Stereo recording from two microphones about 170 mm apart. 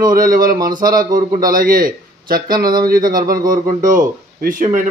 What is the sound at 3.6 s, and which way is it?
A man's voice, 50° right (ahead or behind).